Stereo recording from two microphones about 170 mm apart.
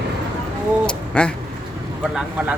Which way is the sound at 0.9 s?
5° left (ahead or behind).